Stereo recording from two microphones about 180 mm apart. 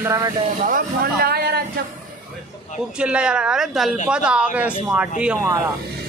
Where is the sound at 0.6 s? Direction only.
55° right (ahead or behind).